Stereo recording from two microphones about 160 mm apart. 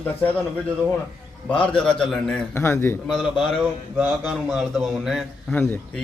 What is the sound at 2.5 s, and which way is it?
Speech, 15° left (ahead or behind).